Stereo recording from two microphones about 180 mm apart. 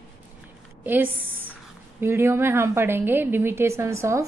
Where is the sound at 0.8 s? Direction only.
10° right (ahead or behind).